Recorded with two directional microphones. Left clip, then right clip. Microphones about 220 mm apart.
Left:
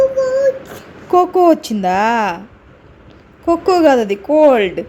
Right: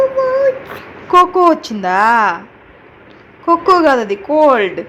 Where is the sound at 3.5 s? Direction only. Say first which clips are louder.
Right 1 dB; 40° left (ahead or behind).